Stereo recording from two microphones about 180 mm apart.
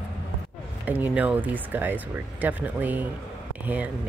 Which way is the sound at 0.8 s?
10° right (ahead or behind).